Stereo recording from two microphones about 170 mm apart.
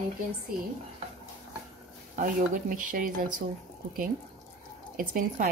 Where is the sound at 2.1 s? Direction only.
50° right (ahead or behind).